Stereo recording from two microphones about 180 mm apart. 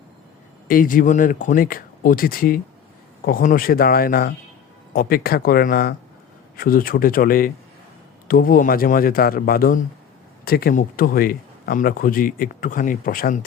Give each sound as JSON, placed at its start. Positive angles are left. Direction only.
{"t": 0.7, "sound": "speech", "side_deg": 50}